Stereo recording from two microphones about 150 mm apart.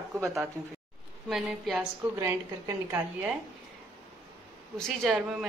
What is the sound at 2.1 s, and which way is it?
A woman's voice, 20° right (ahead or behind).